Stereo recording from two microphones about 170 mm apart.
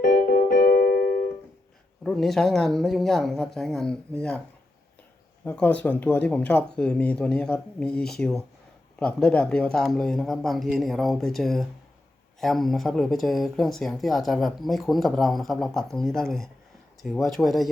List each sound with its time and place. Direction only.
0.0 s keyboard: 60° left (ahead or behind)
2.0 s speech: centre (ahead or behind)
5.5 s speech: 10° left (ahead or behind)